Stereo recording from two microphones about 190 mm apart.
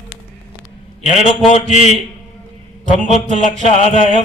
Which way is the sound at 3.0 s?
40° left (ahead or behind).